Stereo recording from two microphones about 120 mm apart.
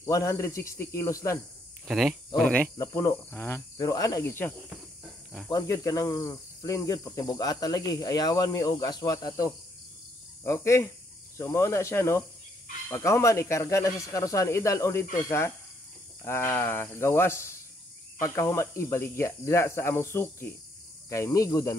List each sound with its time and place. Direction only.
0.0 s speech: 25° left (ahead or behind)
1.9 s cricket: centre (ahead or behind)
2.8 s speech: 25° left (ahead or behind)
5.5 s cricket: 30° left (ahead or behind)
10.4 s speech: 25° left (ahead or behind)